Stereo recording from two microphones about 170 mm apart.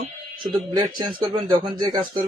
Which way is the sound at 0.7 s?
25° right (ahead or behind).